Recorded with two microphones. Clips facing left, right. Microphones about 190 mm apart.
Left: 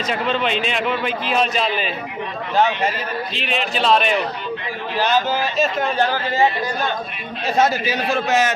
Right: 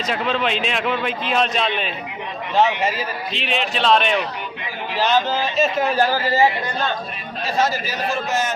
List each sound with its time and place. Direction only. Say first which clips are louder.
0.1 s a man's voice: left 1 dB; centre (ahead or behind)
3.3 s a man's voice: right 2 dB; centre (ahead or behind)
5.5 s a man's voice: right 3 dB; 5° right (ahead or behind)
7.6 s a man's voice: left 3 dB; 65° left (ahead or behind); by 8.5 s 80° left